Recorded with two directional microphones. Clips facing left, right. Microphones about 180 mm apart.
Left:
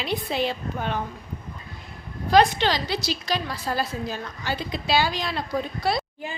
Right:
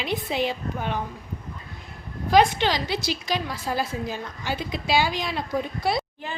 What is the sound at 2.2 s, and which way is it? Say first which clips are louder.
A woman's voice: even; 15° right (ahead or behind).